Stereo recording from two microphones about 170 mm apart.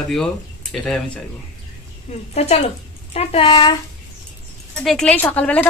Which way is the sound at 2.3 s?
40° left (ahead or behind).